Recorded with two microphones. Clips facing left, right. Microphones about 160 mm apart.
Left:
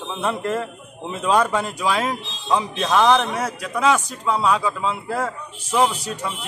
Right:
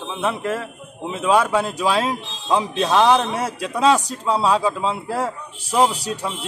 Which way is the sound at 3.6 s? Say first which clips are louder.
Right 3 dB; 30° right (ahead or behind).